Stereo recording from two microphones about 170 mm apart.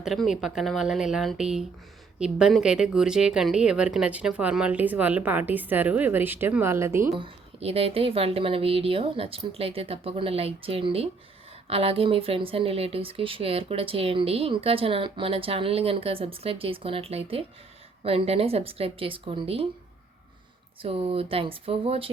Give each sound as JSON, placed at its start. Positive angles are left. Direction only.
{"t": 0.0, "sound": "speech", "side_deg": 0}
{"t": 7.2, "sound": "speech", "side_deg": -35}
{"t": 20.8, "sound": "speech", "side_deg": -35}